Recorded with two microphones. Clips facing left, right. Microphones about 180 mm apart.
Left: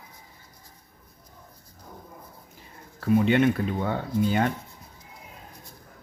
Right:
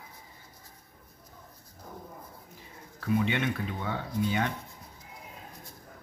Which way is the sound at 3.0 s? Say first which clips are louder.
Left 8 dB; 40° left (ahead or behind).